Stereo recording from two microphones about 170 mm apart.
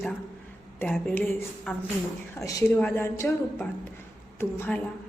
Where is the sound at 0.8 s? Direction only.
5° left (ahead or behind).